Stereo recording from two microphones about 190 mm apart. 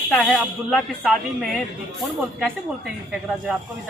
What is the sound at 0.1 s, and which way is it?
A woman's voice, 5° left (ahead or behind).